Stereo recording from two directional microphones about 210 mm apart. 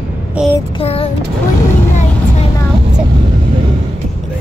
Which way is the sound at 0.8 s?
25° left (ahead or behind).